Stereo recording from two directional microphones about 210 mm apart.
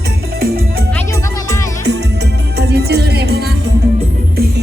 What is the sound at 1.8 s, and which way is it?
Music, 55° right (ahead or behind).